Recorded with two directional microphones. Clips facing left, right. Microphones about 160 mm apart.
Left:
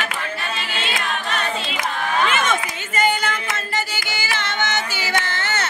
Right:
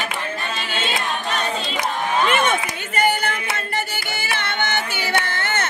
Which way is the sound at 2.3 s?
60° right (ahead or behind).